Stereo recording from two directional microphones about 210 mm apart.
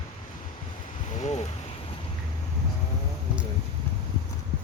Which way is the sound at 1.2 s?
30° left (ahead or behind).